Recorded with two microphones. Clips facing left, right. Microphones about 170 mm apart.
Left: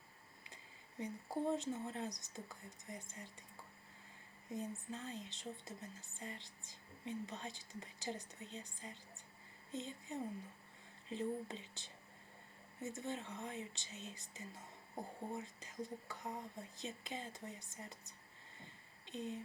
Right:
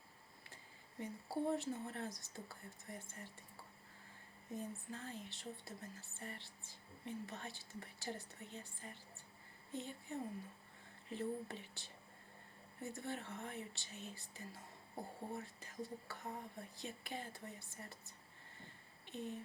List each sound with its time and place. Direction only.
0.5 s speech: 20° left (ahead or behind)
4.4 s speech: 20° left (ahead or behind)
18.6 s a sound: 15° left (ahead or behind)